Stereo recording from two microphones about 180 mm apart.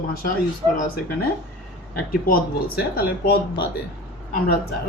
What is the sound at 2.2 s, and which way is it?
Speech, 55° left (ahead or behind).